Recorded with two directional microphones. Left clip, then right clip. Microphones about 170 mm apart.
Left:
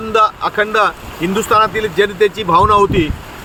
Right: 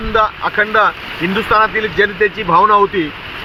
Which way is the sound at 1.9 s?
25° left (ahead or behind).